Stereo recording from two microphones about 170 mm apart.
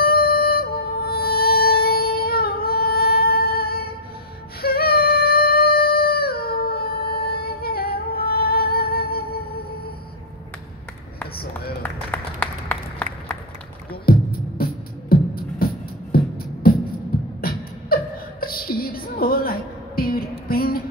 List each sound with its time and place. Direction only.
0.0 s music: 65° left (ahead or behind)
4.6 s a sound: 65° left (ahead or behind)
11.8 s applause: 10° left (ahead or behind)
14.1 s music: 60° left (ahead or behind)
17.4 s beatboxing: 60° left (ahead or behind)
20.0 s music: 60° left (ahead or behind)